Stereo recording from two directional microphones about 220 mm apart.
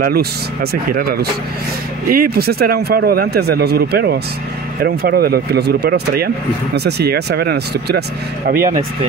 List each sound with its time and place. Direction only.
0.0 s speech: 45° right (ahead or behind)